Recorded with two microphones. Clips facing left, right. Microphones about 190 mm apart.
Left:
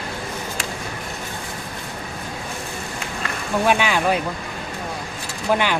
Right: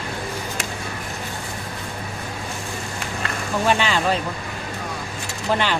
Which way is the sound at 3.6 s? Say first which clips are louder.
Left 1 dB; 10° left (ahead or behind).